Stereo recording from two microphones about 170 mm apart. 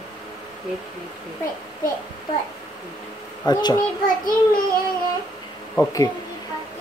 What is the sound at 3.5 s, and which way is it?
Speech, 25° left (ahead or behind).